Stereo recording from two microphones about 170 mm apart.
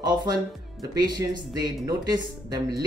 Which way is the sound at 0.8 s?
20° right (ahead or behind).